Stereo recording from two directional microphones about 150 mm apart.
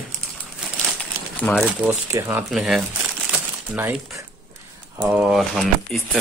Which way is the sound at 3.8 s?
15° right (ahead or behind).